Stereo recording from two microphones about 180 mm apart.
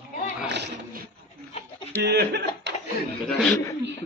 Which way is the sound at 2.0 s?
65° right (ahead or behind).